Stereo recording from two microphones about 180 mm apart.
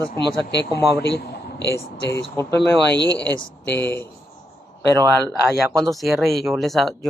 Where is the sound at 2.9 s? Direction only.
75° left (ahead or behind).